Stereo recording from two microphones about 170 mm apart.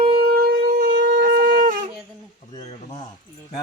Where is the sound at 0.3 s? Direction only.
60° right (ahead or behind).